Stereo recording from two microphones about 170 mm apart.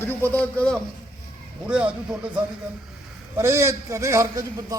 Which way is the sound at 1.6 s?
5° right (ahead or behind).